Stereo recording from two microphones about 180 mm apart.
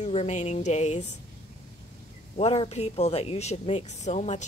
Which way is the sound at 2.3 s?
35° left (ahead or behind).